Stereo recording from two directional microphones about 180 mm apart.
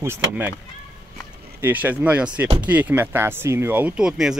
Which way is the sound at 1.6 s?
10° right (ahead or behind).